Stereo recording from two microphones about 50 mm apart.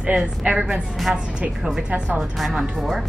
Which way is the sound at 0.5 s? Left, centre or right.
Right.